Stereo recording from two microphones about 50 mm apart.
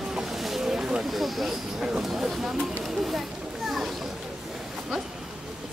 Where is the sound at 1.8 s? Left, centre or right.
Centre.